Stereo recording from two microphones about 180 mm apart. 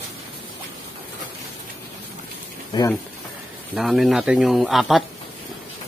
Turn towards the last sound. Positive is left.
turn(degrees=0)  # may be behind; listen again after turning